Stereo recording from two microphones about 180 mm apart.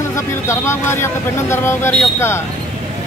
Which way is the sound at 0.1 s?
15° left (ahead or behind).